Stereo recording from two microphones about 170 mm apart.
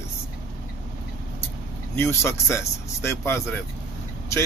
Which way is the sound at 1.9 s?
15° left (ahead or behind).